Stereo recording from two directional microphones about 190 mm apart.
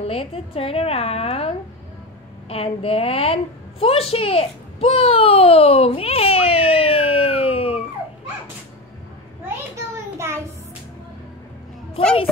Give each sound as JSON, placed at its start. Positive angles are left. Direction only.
{"t": 0.0, "sound": "a woman's voice", "side_deg": 30}
{"t": 2.5, "sound": "a woman's voice", "side_deg": 30}